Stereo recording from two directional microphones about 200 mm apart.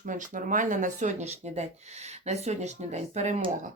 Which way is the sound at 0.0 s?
40° right (ahead or behind).